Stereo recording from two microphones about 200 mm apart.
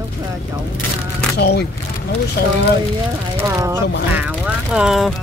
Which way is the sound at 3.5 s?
15° right (ahead or behind).